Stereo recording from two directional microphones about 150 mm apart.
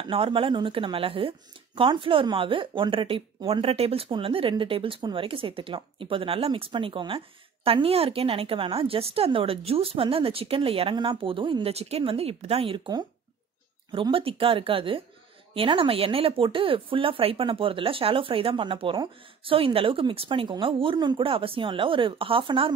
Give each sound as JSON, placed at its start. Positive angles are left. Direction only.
{"t": 0.0, "sound": "speech", "side_deg": -35}